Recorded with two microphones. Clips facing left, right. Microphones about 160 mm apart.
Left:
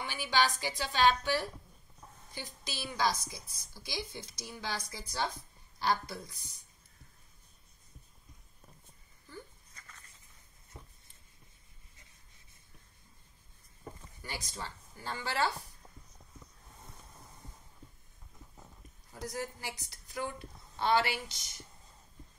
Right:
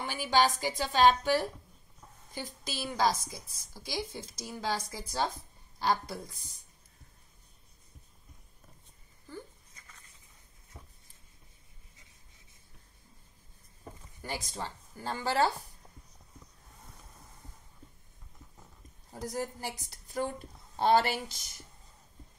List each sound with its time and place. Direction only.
0.0 s a woman's voice: 40° right (ahead or behind)
14.2 s a woman's voice: 40° right (ahead or behind)
19.1 s a woman's voice: 45° right (ahead or behind)